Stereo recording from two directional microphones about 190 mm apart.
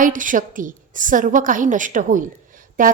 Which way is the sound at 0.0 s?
45° right (ahead or behind).